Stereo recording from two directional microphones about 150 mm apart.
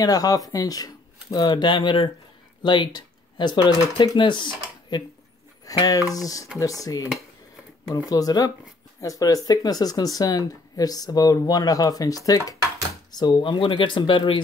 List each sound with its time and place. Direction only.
0.0 s speech: 25° left (ahead or behind)
8.1 s speech: 25° left (ahead or behind)